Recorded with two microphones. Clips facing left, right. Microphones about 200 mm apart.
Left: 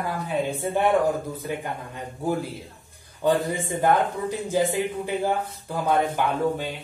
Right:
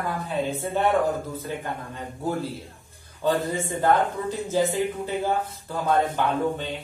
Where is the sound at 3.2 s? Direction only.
15° left (ahead or behind).